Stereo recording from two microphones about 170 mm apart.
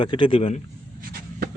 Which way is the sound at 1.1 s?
60° right (ahead or behind).